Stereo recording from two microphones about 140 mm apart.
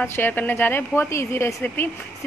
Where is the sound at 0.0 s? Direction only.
15° left (ahead or behind).